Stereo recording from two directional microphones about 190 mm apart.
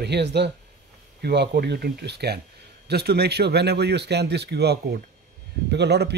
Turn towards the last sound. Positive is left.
turn(degrees=-60)  # may be behind; listen again after turning